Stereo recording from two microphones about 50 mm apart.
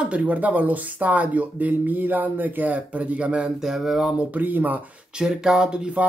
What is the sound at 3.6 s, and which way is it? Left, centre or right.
Speech, centre.